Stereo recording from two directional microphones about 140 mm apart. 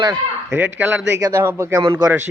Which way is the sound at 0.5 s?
15° right (ahead or behind).